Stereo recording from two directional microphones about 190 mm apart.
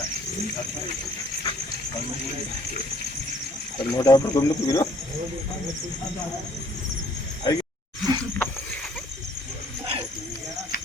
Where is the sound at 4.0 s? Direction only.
20° left (ahead or behind).